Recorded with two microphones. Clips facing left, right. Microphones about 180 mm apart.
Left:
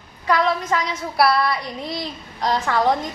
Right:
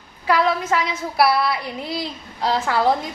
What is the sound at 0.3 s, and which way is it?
A woman's voice, 5° right (ahead or behind).